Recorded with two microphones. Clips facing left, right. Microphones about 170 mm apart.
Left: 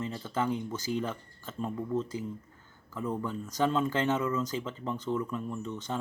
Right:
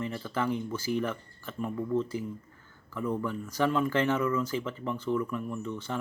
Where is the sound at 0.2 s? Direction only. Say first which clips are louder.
Left 1 dB; 20° left (ahead or behind).